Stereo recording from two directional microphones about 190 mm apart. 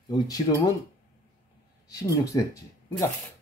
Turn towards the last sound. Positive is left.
turn(degrees=15)  # may be behind; listen again after turning